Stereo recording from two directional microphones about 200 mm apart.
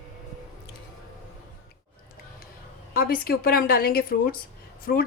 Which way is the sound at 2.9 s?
50° left (ahead or behind).